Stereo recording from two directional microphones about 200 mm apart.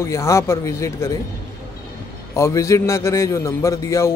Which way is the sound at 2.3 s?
15° left (ahead or behind).